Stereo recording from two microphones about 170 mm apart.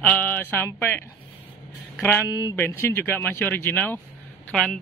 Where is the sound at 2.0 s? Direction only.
10° left (ahead or behind).